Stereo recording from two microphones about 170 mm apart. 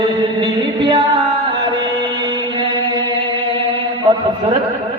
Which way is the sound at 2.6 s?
30° right (ahead or behind).